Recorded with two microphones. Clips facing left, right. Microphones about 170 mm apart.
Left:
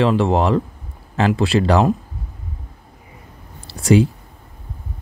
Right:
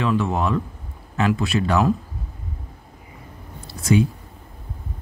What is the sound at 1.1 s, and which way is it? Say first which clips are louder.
Speech: left 3 dB; 30° left (ahead or behind).